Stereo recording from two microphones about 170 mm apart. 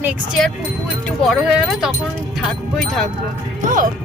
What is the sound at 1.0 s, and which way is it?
Speech, centre (ahead or behind).